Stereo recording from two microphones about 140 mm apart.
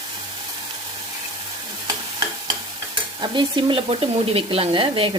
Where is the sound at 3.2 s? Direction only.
35° right (ahead or behind).